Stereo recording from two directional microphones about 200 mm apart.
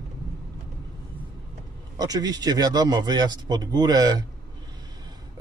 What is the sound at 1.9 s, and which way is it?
Speech, 20° right (ahead or behind).